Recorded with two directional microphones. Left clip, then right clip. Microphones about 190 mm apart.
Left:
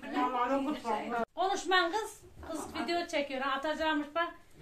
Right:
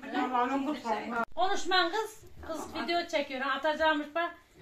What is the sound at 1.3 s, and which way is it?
A woman's voice, 20° right (ahead or behind).